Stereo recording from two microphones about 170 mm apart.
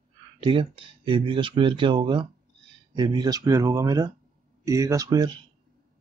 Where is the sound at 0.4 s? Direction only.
30° right (ahead or behind).